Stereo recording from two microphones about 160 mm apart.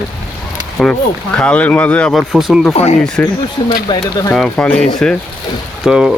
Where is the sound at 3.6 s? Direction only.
30° left (ahead or behind).